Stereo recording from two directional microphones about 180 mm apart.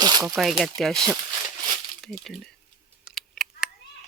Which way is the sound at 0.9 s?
20° right (ahead or behind).